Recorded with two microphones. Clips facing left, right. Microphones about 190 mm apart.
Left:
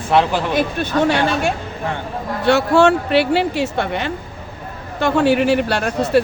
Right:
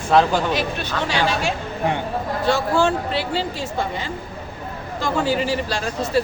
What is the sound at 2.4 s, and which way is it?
A woman's voice, 70° left (ahead or behind).